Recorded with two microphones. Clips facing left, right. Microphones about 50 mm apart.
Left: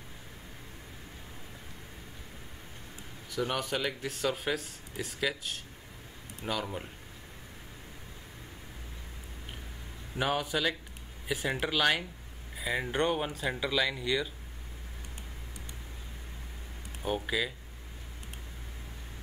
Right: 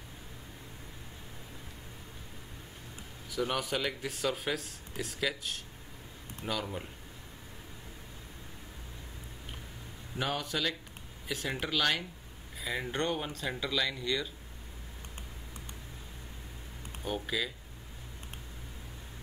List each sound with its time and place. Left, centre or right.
3.3 s speech: centre
10.1 s speech: centre
17.0 s speech: centre